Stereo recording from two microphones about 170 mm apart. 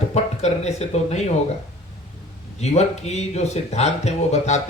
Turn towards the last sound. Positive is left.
turn(degrees=40)  # may be behind; listen again after turning